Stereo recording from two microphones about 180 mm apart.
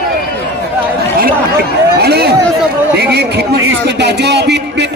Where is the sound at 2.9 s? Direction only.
65° right (ahead or behind).